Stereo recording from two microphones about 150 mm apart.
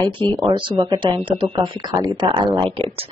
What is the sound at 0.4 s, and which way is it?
A woman's voice, 30° right (ahead or behind).